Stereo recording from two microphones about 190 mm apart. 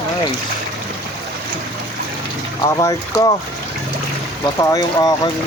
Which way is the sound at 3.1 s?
20° left (ahead or behind).